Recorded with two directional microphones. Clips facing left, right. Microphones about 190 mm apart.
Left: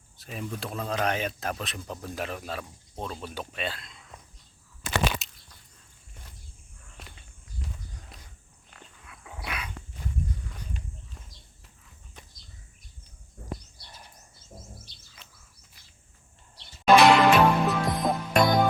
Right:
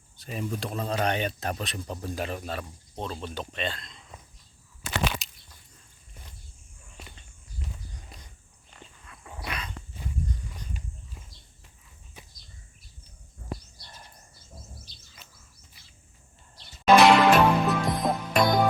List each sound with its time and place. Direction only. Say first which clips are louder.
0.2 s speech: right 3 dB; centre (ahead or behind)
5.2 s a sound: even; centre (ahead or behind)
6.9 s walk: right 1 dB; centre (ahead or behind)
8.1 s a sound: right 1 dB; centre (ahead or behind)
8.7 s dog: right 1 dB; centre (ahead or behind)
14.9 s bird: right 2 dB; 60° left (ahead or behind)
16.8 s music: even; centre (ahead or behind)